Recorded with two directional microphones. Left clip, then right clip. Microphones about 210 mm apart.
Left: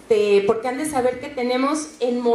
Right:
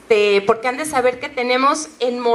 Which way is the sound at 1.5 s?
25° right (ahead or behind).